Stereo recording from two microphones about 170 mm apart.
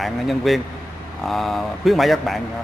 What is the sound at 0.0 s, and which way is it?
A man's voice, centre (ahead or behind).